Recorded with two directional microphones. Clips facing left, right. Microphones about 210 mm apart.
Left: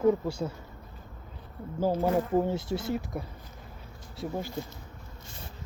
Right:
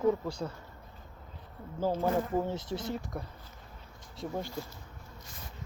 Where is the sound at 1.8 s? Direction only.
10° left (ahead or behind).